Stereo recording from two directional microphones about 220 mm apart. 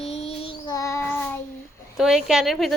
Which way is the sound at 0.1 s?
25° left (ahead or behind).